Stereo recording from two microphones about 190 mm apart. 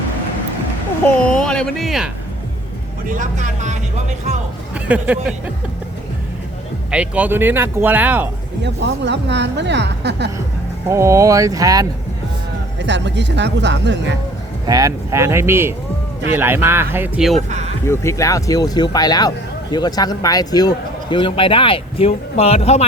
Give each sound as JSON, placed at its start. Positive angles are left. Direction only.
{"t": 1.0, "sound": "speech", "side_deg": 5}
{"t": 3.2, "sound": "speech", "side_deg": -40}
{"t": 4.7, "sound": "speech", "side_deg": -5}
{"t": 6.9, "sound": "speech", "side_deg": -5}
{"t": 8.6, "sound": "speech", "side_deg": -65}
{"t": 10.8, "sound": "speech", "side_deg": -15}
{"t": 12.8, "sound": "speech", "side_deg": -65}
{"t": 14.7, "sound": "speech", "side_deg": -20}
{"t": 17.8, "sound": "speech", "side_deg": 15}